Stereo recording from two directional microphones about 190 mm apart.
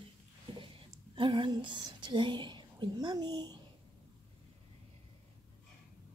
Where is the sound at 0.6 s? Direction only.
25° right (ahead or behind).